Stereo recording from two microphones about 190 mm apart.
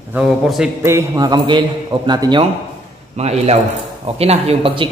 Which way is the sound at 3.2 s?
35° right (ahead or behind).